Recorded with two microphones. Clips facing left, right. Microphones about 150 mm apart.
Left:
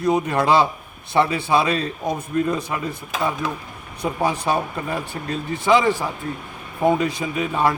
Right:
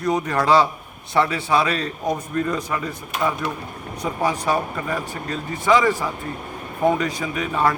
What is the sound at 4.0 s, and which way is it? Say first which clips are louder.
A man's voice: left 1 dB; 10° left (ahead or behind).